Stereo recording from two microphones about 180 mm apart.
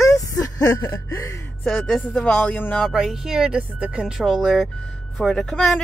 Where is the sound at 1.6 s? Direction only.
5° left (ahead or behind).